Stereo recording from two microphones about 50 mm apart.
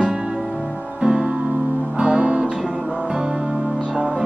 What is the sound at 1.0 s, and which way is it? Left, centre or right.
Music, centre.